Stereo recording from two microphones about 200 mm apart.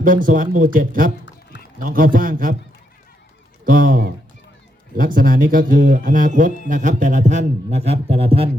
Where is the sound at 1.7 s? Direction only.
45° right (ahead or behind).